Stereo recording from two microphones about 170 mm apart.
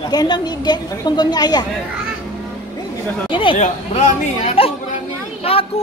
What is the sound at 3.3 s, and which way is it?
Speech, 30° left (ahead or behind).